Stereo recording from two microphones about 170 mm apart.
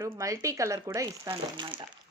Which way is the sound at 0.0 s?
20° right (ahead or behind).